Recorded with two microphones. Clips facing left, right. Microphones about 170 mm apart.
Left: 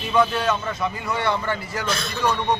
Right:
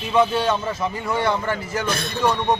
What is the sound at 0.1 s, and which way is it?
Speech, 25° right (ahead or behind).